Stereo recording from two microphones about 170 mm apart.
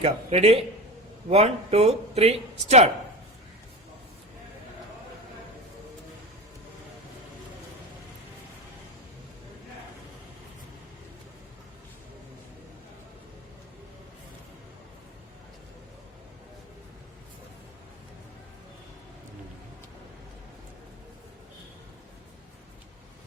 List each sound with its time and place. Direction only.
0.0 s speech: 35° right (ahead or behind)